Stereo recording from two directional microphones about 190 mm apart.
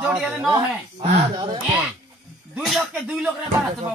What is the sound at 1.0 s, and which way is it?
Speech, 25° right (ahead or behind).